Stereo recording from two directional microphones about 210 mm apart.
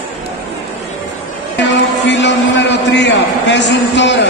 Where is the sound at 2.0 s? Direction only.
55° left (ahead or behind).